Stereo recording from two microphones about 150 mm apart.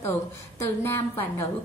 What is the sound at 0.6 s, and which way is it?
Speech, 15° left (ahead or behind).